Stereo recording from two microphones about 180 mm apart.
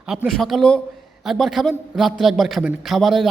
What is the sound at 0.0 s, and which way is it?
A man's voice, 5° right (ahead or behind).